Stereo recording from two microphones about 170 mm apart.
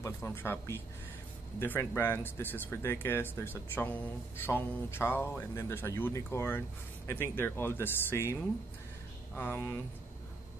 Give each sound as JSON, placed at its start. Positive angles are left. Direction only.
{"t": 0.0, "sound": "speech", "side_deg": 15}